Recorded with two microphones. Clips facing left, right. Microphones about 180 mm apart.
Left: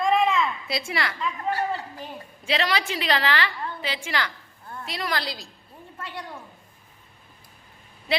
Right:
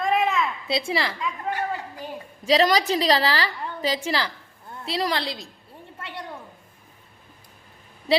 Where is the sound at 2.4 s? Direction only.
40° right (ahead or behind); by 5.5 s 25° right (ahead or behind).